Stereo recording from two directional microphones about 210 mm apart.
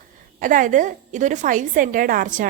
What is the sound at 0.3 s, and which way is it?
A woman's voice, 40° right (ahead or behind).